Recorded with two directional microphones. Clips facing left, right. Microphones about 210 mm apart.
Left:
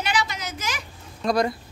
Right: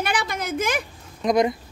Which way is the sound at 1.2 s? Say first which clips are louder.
Right 3 dB; 20° right (ahead or behind).